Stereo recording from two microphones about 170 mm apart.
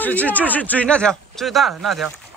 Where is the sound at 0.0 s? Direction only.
10° left (ahead or behind).